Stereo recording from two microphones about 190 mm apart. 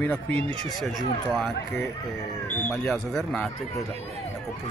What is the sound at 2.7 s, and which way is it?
Speech, 5° left (ahead or behind).